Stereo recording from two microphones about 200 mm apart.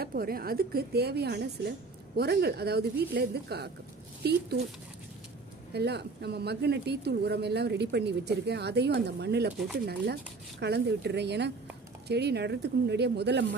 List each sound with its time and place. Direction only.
0.0 s a woman's voice: 50° right (ahead or behind)
5.7 s speech: 55° right (ahead or behind)
10.6 s speech: 55° right (ahead or behind)